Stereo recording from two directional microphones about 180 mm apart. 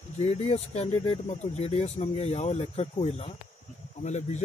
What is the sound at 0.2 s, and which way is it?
Speech, 35° left (ahead or behind).